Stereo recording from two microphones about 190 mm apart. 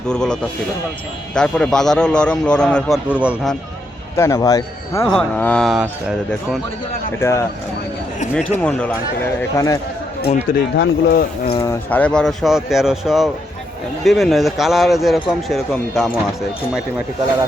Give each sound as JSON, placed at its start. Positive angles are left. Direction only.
{"t": 0.1, "sound": "speech", "side_deg": 5}
{"t": 3.1, "sound": "speech", "side_deg": -5}
{"t": 4.2, "sound": "a man's voice", "side_deg": 20}
{"t": 5.0, "sound": "speech", "side_deg": 5}
{"t": 7.2, "sound": "a man's voice", "side_deg": 15}
{"t": 9.6, "sound": "a man's voice", "side_deg": 15}
{"t": 10.5, "sound": "speech", "side_deg": 55}
{"t": 11.6, "sound": "speech", "side_deg": 10}